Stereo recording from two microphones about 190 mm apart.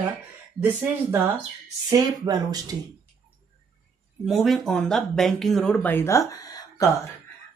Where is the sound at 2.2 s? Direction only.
20° right (ahead or behind).